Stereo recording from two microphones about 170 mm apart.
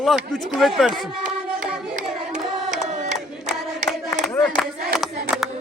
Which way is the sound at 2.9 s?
45° right (ahead or behind).